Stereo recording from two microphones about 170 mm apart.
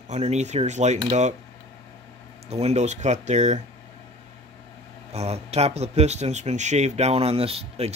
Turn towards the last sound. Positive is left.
turn(degrees=-35)  # may be behind; listen again after turning